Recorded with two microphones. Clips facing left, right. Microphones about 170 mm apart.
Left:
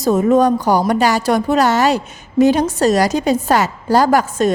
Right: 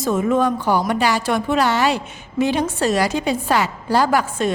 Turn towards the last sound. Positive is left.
turn(degrees=40)  # may be behind; listen again after turning